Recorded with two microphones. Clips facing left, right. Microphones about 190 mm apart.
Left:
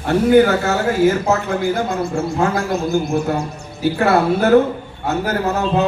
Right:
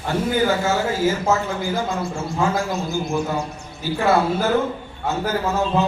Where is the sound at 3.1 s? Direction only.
65° left (ahead or behind).